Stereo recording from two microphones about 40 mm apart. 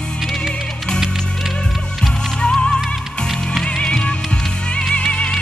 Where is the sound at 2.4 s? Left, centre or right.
Left.